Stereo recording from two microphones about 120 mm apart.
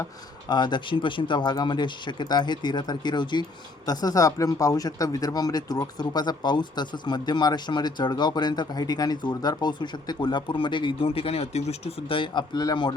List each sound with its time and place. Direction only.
0.4 s speech: 40° left (ahead or behind)